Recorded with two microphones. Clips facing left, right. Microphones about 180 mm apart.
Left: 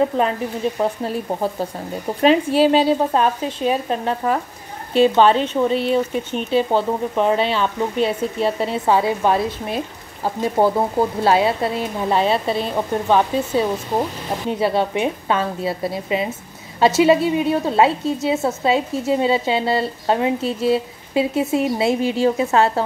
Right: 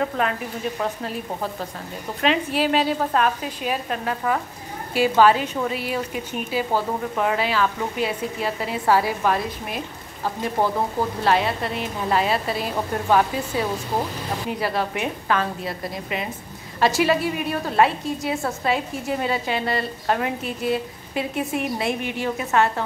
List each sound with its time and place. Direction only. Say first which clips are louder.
0.7 s a woman's voice: left 6 dB; 30° left (ahead or behind)